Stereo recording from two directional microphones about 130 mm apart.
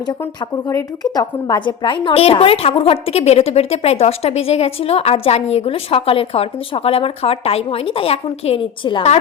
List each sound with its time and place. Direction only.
0.1 s a woman's voice: 25° left (ahead or behind); by 9.0 s 40° left (ahead or behind)